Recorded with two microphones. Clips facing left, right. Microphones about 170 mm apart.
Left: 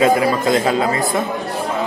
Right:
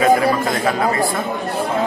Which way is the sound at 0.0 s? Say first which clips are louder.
Even; 25° left (ahead or behind).